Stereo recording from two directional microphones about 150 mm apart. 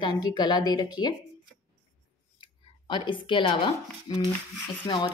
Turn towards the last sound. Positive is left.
turn(degrees=35)  # may be behind; listen again after turning